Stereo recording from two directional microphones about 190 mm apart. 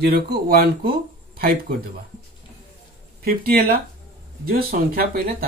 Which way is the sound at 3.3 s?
50° right (ahead or behind).